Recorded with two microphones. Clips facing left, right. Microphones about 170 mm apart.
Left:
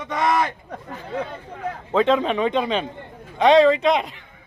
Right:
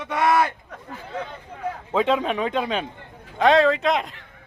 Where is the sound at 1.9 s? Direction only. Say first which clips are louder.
Left 3 dB; 5° right (ahead or behind).